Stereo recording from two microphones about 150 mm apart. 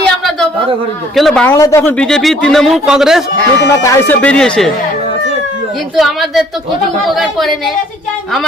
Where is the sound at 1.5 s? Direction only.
20° left (ahead or behind).